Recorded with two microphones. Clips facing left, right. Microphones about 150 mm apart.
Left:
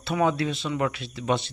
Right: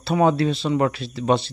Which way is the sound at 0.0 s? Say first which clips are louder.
Right 5 dB; 35° right (ahead or behind).